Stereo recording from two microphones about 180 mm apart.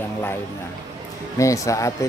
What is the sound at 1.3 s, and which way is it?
Speech, 15° left (ahead or behind).